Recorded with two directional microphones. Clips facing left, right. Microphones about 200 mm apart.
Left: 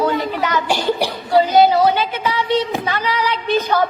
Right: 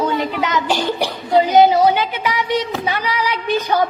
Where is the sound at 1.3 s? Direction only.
15° right (ahead or behind).